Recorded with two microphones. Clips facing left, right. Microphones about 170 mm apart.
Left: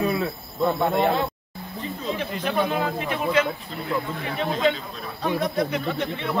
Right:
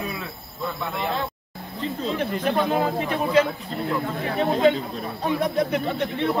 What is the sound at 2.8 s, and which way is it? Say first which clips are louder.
Speech: right 2 dB; 35° right (ahead or behind).